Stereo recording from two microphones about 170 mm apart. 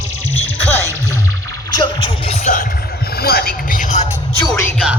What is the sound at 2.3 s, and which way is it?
Music, 45° left (ahead or behind).